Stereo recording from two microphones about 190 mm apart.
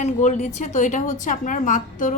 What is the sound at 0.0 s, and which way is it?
A woman's voice, 35° left (ahead or behind).